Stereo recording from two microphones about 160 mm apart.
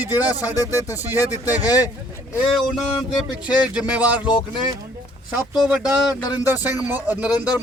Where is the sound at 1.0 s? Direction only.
15° right (ahead or behind).